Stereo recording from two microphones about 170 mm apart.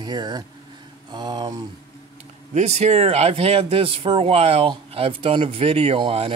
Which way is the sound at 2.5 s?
40° right (ahead or behind).